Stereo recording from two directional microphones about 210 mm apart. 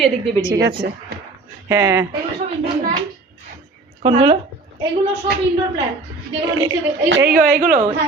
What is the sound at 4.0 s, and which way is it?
Speech, 25° right (ahead or behind).